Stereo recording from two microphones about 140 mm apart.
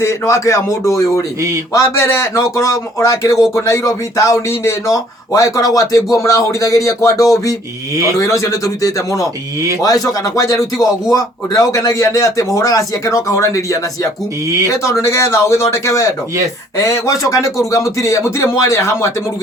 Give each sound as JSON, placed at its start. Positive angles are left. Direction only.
{"t": 0.0, "sound": "speech", "side_deg": 20}